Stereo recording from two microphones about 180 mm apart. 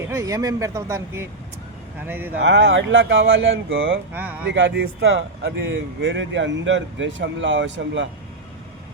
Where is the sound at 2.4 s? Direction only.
85° right.